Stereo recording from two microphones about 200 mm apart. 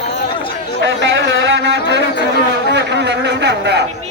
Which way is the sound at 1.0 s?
65° right (ahead or behind).